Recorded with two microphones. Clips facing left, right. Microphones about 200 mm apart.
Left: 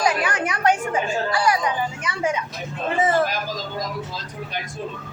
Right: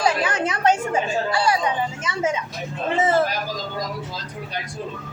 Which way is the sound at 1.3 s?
25° right (ahead or behind).